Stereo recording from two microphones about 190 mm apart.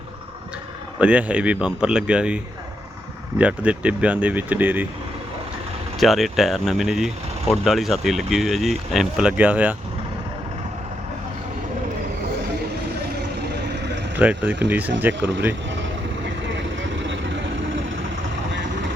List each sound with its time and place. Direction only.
0.9 s speech: 5° right (ahead or behind)
6.0 s speech: centre (ahead or behind)
14.2 s speech: 10° right (ahead or behind)
15.8 s vehicle: 70° right (ahead or behind)